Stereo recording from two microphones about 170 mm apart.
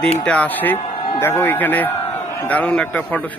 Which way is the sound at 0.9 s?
30° left (ahead or behind).